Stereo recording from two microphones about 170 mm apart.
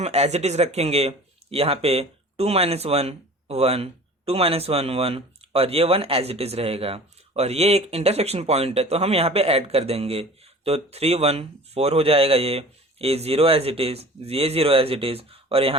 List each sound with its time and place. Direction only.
0.0 s speech: 40° right (ahead or behind)